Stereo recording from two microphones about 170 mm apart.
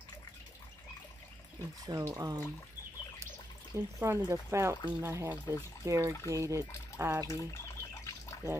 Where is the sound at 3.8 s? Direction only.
20° right (ahead or behind).